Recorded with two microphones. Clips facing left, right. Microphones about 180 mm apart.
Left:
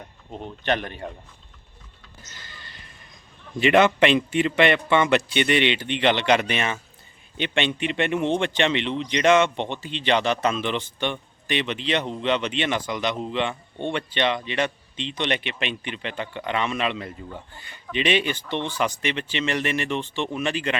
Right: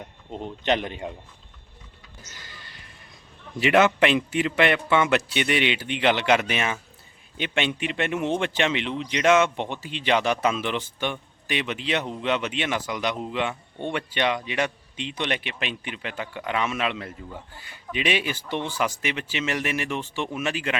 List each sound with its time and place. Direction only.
0.4 s a man's voice: 15° right (ahead or behind)
2.3 s a sound: 10° right (ahead or behind)
3.6 s speech: 5° right (ahead or behind)